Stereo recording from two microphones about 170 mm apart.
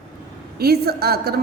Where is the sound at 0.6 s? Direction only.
65° right (ahead or behind).